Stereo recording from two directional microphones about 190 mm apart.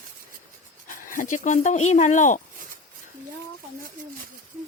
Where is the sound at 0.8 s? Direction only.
45° left (ahead or behind).